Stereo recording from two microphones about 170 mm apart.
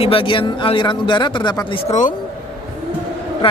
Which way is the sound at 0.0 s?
30° left (ahead or behind).